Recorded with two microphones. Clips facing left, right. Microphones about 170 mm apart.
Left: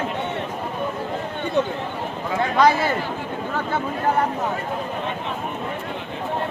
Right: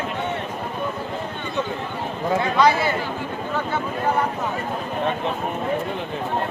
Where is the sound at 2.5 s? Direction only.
45° left (ahead or behind).